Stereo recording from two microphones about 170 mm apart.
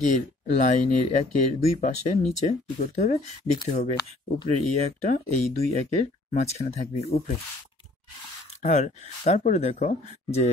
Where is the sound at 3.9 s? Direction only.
25° left (ahead or behind).